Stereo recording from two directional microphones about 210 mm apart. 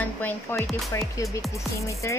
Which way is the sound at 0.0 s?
10° left (ahead or behind).